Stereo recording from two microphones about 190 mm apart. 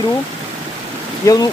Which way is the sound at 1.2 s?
20° left (ahead or behind).